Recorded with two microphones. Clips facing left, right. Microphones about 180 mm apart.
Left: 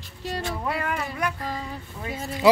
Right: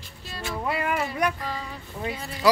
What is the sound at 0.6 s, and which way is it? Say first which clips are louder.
Music: right 5 dB; 10° right (ahead or behind).